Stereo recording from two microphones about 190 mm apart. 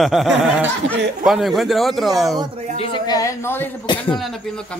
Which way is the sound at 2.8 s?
25° left (ahead or behind).